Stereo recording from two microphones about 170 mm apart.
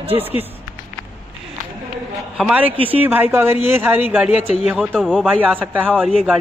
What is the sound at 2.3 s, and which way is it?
A man's voice, 10° right (ahead or behind).